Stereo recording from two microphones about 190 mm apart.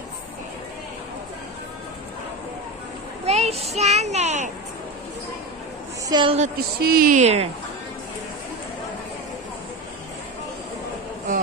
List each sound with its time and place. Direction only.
3.3 s child singing: 35° right (ahead or behind)
6.0 s a woman's voice: 20° right (ahead or behind)
6.8 s speech: 50° right (ahead or behind)